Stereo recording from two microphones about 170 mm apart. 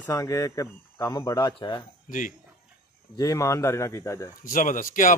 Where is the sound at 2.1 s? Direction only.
50° left (ahead or behind).